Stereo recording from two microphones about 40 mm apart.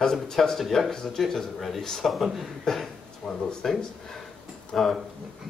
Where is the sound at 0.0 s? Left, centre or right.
Centre.